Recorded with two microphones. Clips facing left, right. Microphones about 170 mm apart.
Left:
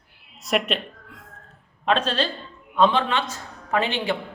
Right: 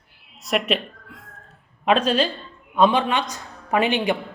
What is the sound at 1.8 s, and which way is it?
Speech, 10° right (ahead or behind).